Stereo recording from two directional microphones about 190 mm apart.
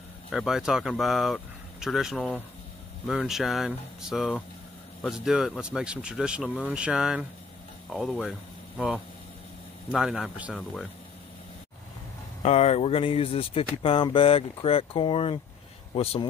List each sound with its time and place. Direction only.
0.3 s speech: centre (ahead or behind)
12.4 s speech: 35° left (ahead or behind)